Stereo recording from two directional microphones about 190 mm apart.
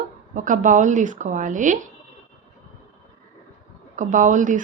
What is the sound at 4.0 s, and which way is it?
Speech, 40° right (ahead or behind).